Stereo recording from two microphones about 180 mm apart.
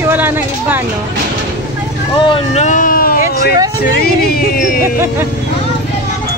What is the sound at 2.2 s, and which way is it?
Speech, 35° left (ahead or behind).